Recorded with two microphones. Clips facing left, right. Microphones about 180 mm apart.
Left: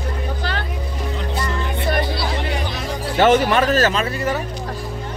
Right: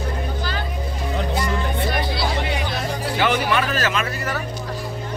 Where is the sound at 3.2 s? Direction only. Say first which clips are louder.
Left 7 dB; 40° left (ahead or behind); by 4.4 s 25° left (ahead or behind).